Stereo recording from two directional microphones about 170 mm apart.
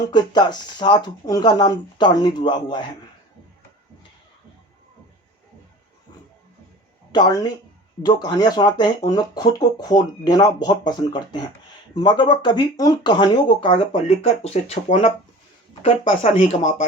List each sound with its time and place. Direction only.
0.0 s speech: 25° left (ahead or behind)
7.1 s speech: 25° left (ahead or behind); by 16.8 s 45° left (ahead or behind)